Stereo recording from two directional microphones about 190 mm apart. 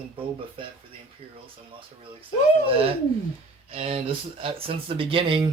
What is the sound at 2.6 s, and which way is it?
Speech, 30° right (ahead or behind).